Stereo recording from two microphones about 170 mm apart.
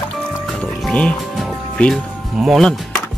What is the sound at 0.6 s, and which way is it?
Music, 5° left (ahead or behind).